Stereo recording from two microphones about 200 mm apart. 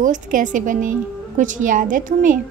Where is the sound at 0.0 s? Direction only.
40° right (ahead or behind).